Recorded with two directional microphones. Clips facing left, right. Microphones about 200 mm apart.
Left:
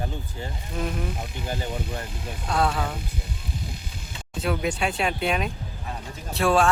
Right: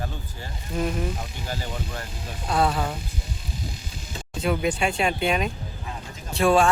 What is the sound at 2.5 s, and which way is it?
Speech, 5° right (ahead or behind).